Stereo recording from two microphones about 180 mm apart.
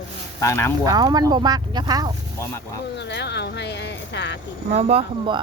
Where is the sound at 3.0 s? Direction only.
70° left (ahead or behind).